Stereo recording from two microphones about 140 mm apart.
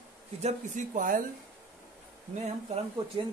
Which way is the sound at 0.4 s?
55° right (ahead or behind).